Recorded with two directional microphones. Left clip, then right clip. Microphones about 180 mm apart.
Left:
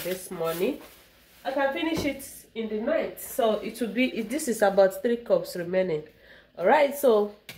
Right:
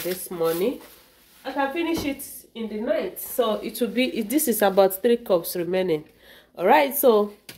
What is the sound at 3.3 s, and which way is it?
Speech, 70° right (ahead or behind).